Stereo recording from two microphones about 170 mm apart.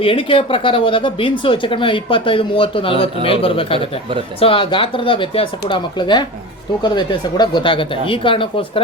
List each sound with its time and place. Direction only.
0.0 s speech: 30° left (ahead or behind)